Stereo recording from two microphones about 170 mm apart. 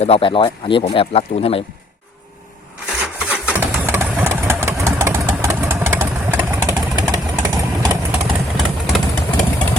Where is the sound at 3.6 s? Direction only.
15° right (ahead or behind).